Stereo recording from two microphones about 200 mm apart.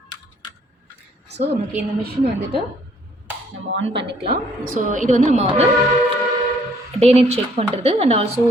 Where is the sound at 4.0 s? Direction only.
60° right (ahead or behind).